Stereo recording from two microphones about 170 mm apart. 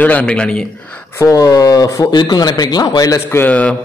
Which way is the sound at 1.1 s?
20° left (ahead or behind).